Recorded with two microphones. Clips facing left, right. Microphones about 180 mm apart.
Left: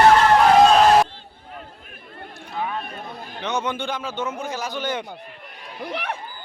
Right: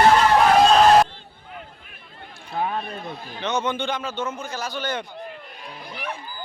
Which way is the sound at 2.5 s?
45° right (ahead or behind).